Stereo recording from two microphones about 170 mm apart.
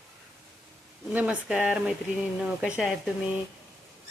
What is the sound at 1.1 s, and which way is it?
Speech, 10° right (ahead or behind).